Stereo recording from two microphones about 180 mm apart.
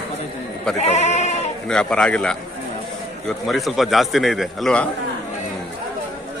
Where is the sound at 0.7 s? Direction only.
40° left (ahead or behind).